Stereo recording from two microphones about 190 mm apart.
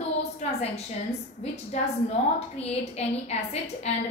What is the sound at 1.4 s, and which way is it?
A woman's voice, 35° left (ahead or behind).